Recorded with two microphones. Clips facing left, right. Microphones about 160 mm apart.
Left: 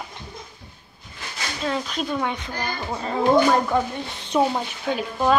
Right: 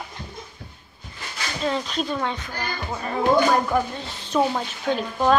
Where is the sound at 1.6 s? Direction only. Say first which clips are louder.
Right 1 dB; 5° left (ahead or behind).